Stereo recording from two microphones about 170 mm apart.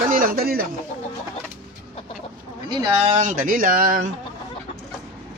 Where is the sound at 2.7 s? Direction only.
20° right (ahead or behind).